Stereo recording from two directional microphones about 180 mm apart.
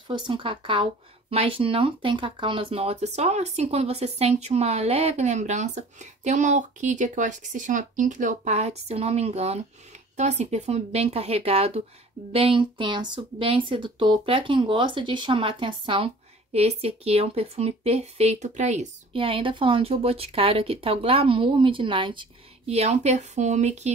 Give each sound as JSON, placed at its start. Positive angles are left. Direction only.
{"t": 0.1, "sound": "speech", "side_deg": -25}